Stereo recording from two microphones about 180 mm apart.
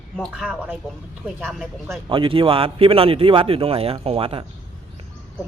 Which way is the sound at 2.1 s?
30° right (ahead or behind).